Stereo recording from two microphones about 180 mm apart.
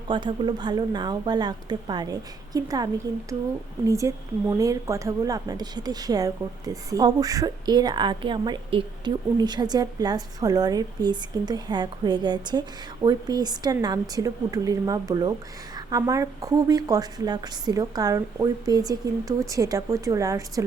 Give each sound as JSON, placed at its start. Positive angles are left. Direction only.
{"t": 0.1, "sound": "a woman's voice", "side_deg": -25}